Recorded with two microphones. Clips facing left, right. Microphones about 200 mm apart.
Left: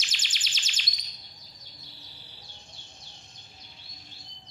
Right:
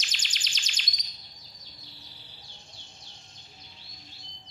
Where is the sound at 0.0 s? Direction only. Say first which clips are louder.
Even; 5° left (ahead or behind).